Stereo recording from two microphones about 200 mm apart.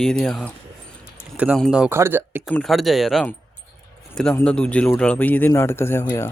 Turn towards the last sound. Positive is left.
turn(degrees=10)  # may be behind; listen again after turning